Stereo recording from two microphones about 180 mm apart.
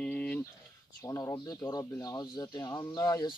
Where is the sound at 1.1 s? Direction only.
20° left (ahead or behind).